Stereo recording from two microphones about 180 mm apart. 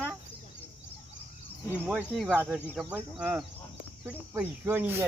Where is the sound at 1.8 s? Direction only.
Centre (ahead or behind).